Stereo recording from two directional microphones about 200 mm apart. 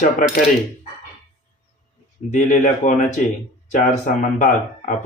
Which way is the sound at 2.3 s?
40° left (ahead or behind).